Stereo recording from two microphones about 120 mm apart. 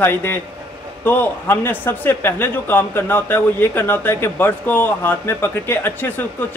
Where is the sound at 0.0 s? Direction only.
20° left (ahead or behind).